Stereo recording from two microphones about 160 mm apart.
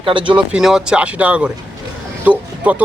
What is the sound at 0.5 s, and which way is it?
Speech, 5° right (ahead or behind).